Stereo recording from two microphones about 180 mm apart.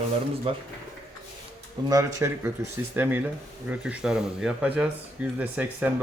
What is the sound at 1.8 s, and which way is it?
Speech, 15° right (ahead or behind).